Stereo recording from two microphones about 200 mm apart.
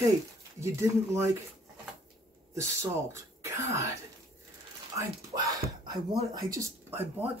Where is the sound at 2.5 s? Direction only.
15° right (ahead or behind).